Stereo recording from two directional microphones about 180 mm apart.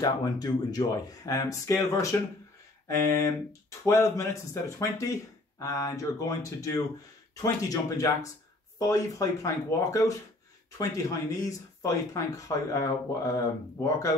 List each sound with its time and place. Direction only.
0.0 s speech: 20° left (ahead or behind)